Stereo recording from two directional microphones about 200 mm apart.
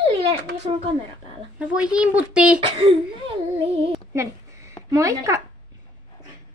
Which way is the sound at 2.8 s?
30° right (ahead or behind).